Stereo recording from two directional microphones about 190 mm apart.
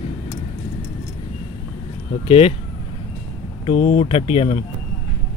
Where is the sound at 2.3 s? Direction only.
30° left (ahead or behind).